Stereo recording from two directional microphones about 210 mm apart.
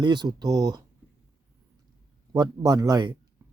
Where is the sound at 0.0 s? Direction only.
20° right (ahead or behind).